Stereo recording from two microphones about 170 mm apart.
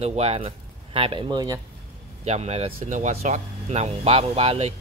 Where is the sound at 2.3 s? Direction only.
40° right (ahead or behind).